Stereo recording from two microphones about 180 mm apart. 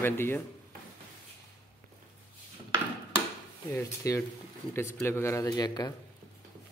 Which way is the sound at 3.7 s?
20° left (ahead or behind).